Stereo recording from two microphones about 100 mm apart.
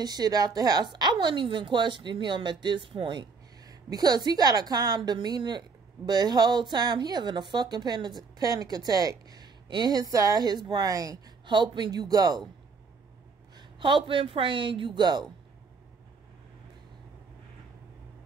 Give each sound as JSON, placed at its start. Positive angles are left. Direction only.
{"t": 0.0, "sound": "a woman's voice", "side_deg": -40}
{"t": 10.9, "sound": "a woman's voice", "side_deg": -35}
{"t": 11.4, "sound": "a woman's voice", "side_deg": -50}
{"t": 13.6, "sound": "a woman's voice", "side_deg": -50}